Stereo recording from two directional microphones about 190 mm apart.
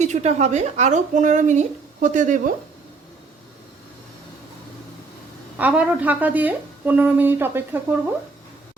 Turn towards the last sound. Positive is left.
turn(degrees=-10)  # may be behind; listen again after turning